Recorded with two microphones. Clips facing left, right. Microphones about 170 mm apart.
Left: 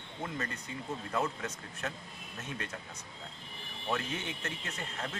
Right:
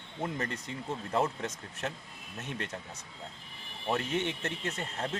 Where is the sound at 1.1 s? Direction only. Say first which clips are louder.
Right 4 dB; 25° right (ahead or behind).